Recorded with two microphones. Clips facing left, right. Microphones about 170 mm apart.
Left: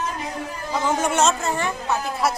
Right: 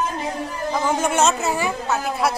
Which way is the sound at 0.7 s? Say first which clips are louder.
Even; centre (ahead or behind).